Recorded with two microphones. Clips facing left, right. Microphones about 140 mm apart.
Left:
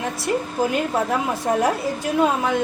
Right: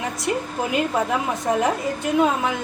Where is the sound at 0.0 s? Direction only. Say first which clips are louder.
Left 1 dB; centre (ahead or behind).